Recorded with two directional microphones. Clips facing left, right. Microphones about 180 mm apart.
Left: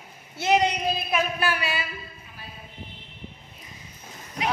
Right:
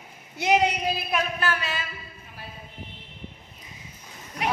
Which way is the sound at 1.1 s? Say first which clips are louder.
Left 2 dB; 10° left (ahead or behind).